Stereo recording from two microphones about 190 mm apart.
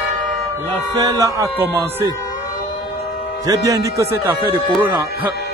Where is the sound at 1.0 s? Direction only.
20° right (ahead or behind).